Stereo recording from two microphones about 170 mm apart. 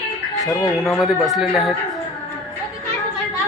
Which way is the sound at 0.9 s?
Centre (ahead or behind).